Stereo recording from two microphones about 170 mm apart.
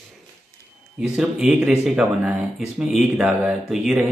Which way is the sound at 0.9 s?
5° right (ahead or behind).